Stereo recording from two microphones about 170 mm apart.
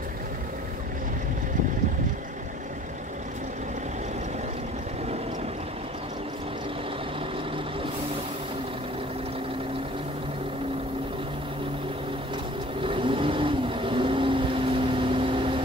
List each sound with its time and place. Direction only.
12.8 s vehicle: 30° right (ahead or behind)